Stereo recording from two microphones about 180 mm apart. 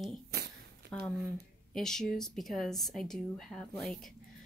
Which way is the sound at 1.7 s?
5° left (ahead or behind).